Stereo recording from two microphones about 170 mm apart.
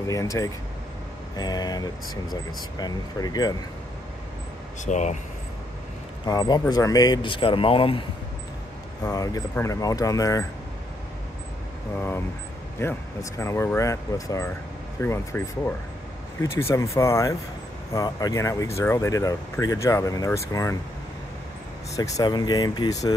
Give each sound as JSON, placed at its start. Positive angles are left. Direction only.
{"t": 0.0, "sound": "speech", "side_deg": 20}
{"t": 4.8, "sound": "speech", "side_deg": 45}
{"t": 6.2, "sound": "speech", "side_deg": 25}
{"t": 9.0, "sound": "speech", "side_deg": 20}
{"t": 12.7, "sound": "speech", "side_deg": 15}
{"t": 21.9, "sound": "speech", "side_deg": 20}